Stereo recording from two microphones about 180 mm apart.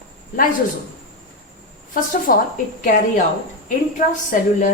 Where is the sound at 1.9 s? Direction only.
50° left (ahead or behind).